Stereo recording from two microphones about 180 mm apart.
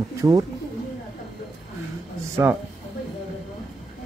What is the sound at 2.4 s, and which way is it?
Speech, 15° right (ahead or behind).